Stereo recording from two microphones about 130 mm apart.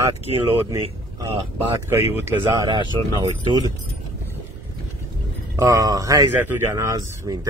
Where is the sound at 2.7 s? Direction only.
35° right (ahead or behind).